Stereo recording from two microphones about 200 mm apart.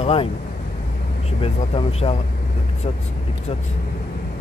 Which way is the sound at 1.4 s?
30° left (ahead or behind).